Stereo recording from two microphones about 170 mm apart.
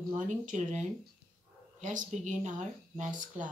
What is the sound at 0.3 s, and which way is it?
Speech, 45° right (ahead or behind).